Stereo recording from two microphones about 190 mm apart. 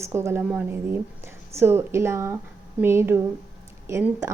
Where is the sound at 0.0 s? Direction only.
15° right (ahead or behind).